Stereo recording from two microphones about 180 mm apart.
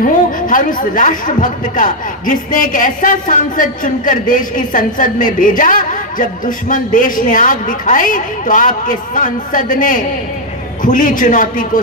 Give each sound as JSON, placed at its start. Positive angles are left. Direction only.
{"t": 0.0, "sound": "a woman's voice", "side_deg": 50}